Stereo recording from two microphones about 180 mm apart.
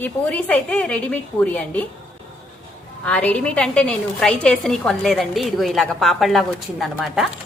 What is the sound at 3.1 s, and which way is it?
A woman's voice, 5° left (ahead or behind).